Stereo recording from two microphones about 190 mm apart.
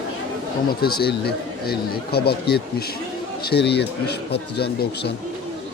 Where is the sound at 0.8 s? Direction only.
55° left (ahead or behind).